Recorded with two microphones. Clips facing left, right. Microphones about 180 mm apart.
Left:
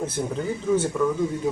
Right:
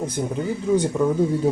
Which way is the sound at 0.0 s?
15° right (ahead or behind).